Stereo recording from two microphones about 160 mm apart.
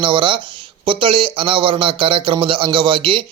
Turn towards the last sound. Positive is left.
turn(degrees=-35)  # may be behind; listen again after turning